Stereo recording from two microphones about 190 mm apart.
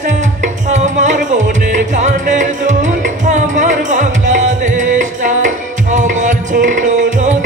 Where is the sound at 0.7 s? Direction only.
40° right (ahead or behind).